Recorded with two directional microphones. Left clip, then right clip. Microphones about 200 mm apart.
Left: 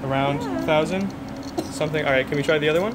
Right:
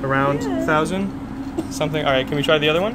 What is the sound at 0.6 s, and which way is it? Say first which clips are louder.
Speech: even; 10° left (ahead or behind).